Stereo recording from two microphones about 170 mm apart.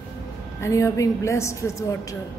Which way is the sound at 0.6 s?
20° left (ahead or behind).